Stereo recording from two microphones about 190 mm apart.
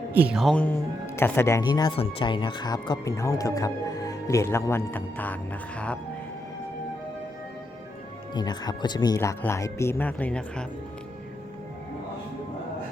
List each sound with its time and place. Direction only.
0.1 s speech: 10° right (ahead or behind)
8.4 s speech: 20° left (ahead or behind); by 10.7 s 5° left (ahead or behind)